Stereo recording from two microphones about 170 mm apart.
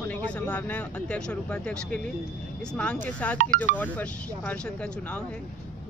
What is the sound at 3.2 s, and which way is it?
Speech, 10° left (ahead or behind).